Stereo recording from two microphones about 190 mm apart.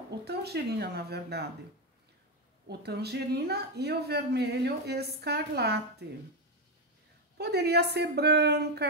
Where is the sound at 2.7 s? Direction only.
60° right (ahead or behind).